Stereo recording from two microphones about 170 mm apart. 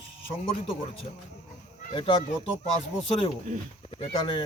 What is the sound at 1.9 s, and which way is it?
Speech, 30° left (ahead or behind).